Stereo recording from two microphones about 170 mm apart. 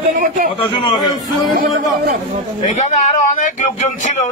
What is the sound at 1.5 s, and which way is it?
Speech, 65° right (ahead or behind).